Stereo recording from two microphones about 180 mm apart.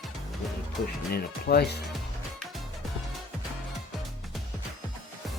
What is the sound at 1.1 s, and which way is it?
Speech, 60° left (ahead or behind).